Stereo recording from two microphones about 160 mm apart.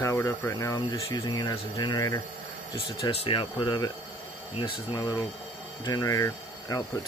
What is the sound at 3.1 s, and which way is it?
Speech, 35° left (ahead or behind).